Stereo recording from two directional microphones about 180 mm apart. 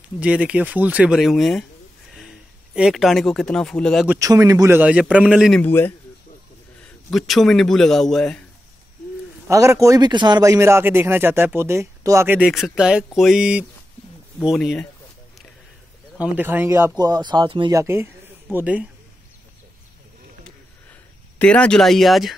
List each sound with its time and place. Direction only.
0.2 s speech: 5° right (ahead or behind)
2.7 s speech: 5° right (ahead or behind)
4.1 s speech: 20° right (ahead or behind)
5.6 s speech: 10° left (ahead or behind)
7.1 s speech: centre (ahead or behind)
9.5 s speech: 15° right (ahead or behind); by 14.9 s centre (ahead or behind)
16.2 s speech: 10° right (ahead or behind); by 17.7 s 25° right (ahead or behind)
17.7 s speech: 15° right (ahead or behind)
21.4 s speech: 5° left (ahead or behind)